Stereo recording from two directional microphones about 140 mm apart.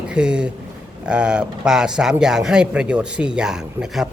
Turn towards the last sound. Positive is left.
turn(degrees=-5)  # may be behind; listen again after turning